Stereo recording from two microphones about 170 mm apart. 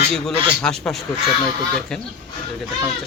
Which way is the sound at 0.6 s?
5° left (ahead or behind).